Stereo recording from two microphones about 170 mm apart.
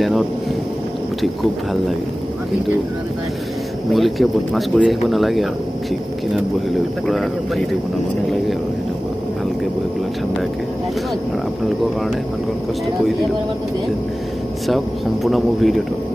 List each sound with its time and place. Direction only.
1.2 s speech: centre (ahead or behind)
3.9 s speech: centre (ahead or behind)
15.2 s speech: centre (ahead or behind)